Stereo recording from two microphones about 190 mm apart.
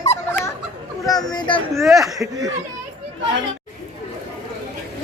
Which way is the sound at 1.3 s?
25° left (ahead or behind).